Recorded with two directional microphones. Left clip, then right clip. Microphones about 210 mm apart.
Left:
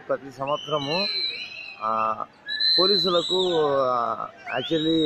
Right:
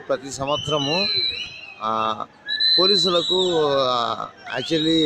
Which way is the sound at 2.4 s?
50° left (ahead or behind).